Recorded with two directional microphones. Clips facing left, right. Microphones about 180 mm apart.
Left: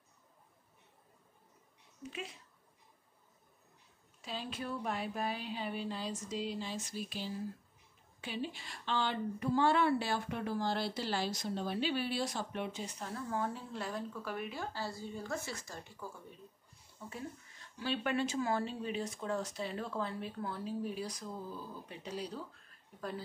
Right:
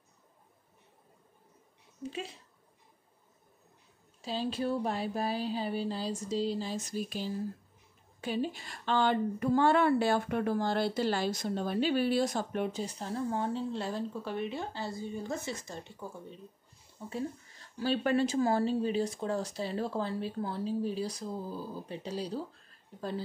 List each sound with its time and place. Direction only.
2.0 s a woman's voice: 30° right (ahead or behind)
4.2 s a woman's voice: 30° right (ahead or behind)
17.1 s a woman's voice: 35° right (ahead or behind)